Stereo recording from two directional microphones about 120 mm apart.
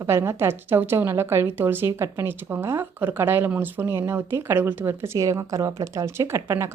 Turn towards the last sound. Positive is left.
turn(degrees=-20)  # may be behind; listen again after turning